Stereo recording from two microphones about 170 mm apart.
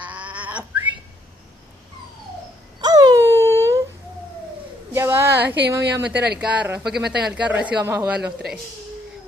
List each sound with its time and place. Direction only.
0.0 s a sound: 10° right (ahead or behind)
2.8 s wail: 20° right (ahead or behind)
4.9 s a sound: 15° right (ahead or behind)
5.7 s speech: 15° right (ahead or behind)
6.1 s speech: 75° right (ahead or behind)
6.4 s speech: 10° right (ahead or behind)